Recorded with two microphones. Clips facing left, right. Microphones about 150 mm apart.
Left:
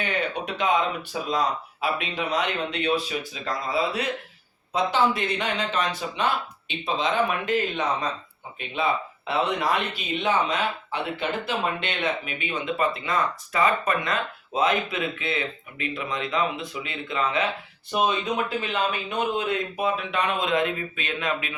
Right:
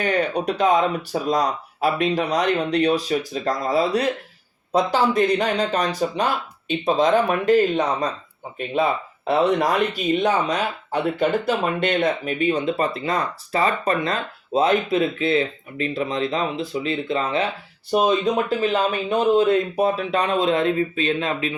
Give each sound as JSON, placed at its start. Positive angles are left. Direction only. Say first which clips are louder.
{"t": 0.0, "sound": "speech", "louder": "right 7 dB", "side_deg": -40}